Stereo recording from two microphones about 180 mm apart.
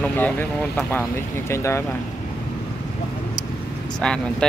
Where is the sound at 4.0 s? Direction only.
5° left (ahead or behind).